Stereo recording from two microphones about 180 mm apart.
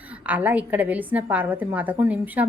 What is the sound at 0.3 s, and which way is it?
A woman's voice, 10° right (ahead or behind).